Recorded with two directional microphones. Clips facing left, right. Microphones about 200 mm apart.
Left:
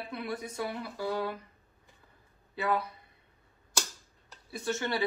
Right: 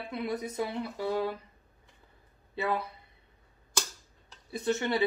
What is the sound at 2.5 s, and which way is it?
Speech, 25° right (ahead or behind).